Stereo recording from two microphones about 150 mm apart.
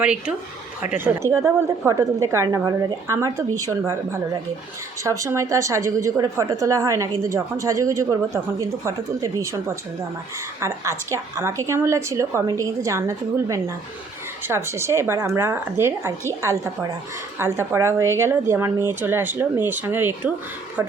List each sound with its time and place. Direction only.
0.0 s a woman's voice: 10° right (ahead or behind)
17.3 s speech: 15° right (ahead or behind)